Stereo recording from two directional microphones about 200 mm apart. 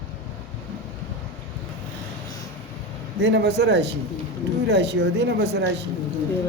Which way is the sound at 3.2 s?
55° right (ahead or behind).